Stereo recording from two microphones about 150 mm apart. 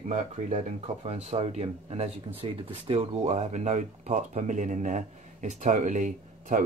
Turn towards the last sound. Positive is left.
turn(degrees=-55)  # may be behind; listen again after turning